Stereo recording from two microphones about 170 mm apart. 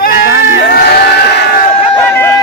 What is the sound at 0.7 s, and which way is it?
Speech, 75° left (ahead or behind).